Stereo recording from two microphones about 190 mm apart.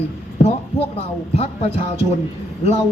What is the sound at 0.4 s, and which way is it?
Speech, 30° left (ahead or behind).